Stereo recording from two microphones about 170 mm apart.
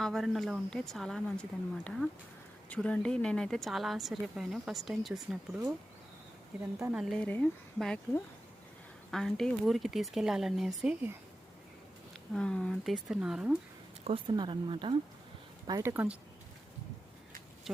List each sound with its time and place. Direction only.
0.0 s speech: centre (ahead or behind)
6.9 s speech: centre (ahead or behind)
12.3 s speech: 5° left (ahead or behind)
14.0 s speech: 30° right (ahead or behind)
15.6 s speech: 20° right (ahead or behind)